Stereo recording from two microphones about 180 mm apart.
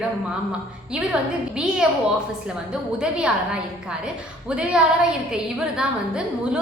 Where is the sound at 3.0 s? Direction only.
5° right (ahead or behind).